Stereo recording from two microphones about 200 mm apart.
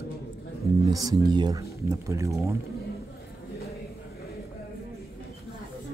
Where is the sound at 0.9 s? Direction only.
20° right (ahead or behind).